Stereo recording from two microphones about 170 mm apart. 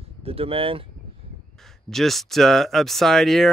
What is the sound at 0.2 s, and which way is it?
Speech, 35° right (ahead or behind).